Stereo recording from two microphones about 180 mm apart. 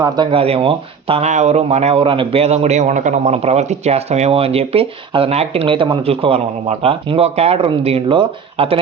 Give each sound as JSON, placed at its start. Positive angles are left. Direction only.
{"t": 0.0, "sound": "speech", "side_deg": -30}